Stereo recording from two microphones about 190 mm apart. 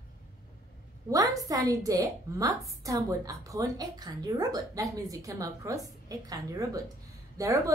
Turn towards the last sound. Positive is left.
turn(degrees=-15)  # may be behind; listen again after turning